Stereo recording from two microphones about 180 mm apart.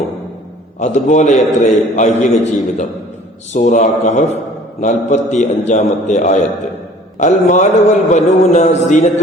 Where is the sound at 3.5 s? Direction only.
40° left (ahead or behind).